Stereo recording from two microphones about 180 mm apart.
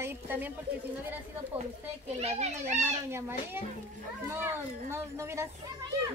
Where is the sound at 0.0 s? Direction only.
10° right (ahead or behind).